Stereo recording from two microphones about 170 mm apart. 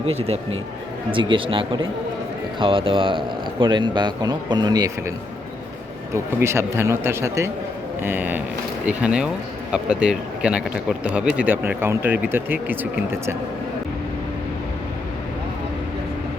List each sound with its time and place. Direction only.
0.0 s speech: 35° right (ahead or behind)
6.1 s speech: 15° right (ahead or behind)